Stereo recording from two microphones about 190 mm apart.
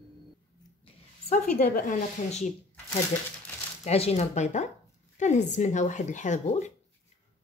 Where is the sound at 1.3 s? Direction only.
45° left (ahead or behind).